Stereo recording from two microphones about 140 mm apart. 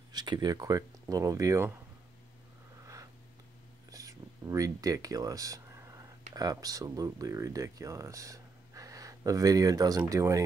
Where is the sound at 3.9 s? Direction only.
25° right (ahead or behind).